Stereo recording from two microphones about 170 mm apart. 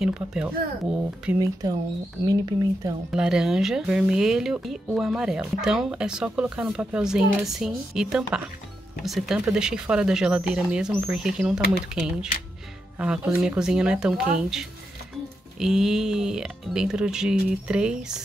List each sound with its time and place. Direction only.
0.0 s speech: 5° right (ahead or behind)
1.4 s speech: 20° right (ahead or behind)
3.1 s speech: 5° right (ahead or behind)
15.6 s speech: 5° right (ahead or behind)